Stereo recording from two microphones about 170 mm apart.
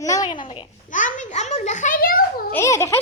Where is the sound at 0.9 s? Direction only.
50° left (ahead or behind).